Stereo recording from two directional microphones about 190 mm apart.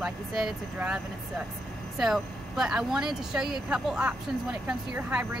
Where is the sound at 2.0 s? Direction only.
Centre (ahead or behind).